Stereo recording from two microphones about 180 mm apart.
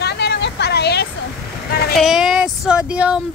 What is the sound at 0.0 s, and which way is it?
Vehicle, 65° left (ahead or behind).